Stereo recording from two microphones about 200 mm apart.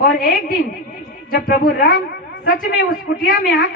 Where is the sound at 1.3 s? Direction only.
50° left (ahead or behind).